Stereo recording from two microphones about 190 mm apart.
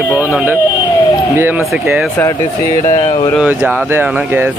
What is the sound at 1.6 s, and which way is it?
Speech, centre (ahead or behind).